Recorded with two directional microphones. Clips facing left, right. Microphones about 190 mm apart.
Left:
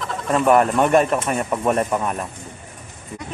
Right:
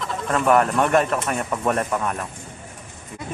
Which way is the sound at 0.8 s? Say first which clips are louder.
Left 3 dB; 10° left (ahead or behind).